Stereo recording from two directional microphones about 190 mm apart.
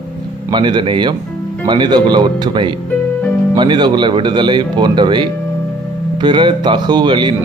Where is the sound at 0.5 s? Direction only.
25° right (ahead or behind).